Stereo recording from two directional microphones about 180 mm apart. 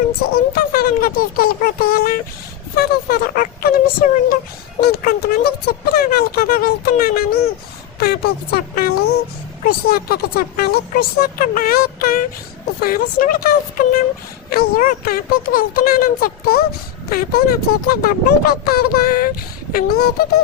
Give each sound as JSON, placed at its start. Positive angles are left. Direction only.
{"t": 0.3, "sound": "speech", "side_deg": 55}